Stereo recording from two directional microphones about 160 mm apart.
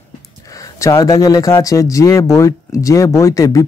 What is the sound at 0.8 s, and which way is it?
Speech, 20° left (ahead or behind).